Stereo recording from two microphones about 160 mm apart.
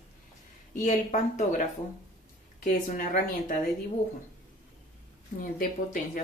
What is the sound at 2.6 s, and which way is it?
Speech, 55° left (ahead or behind).